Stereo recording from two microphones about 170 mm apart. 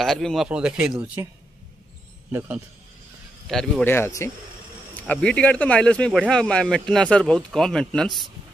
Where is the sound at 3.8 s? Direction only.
15° left (ahead or behind).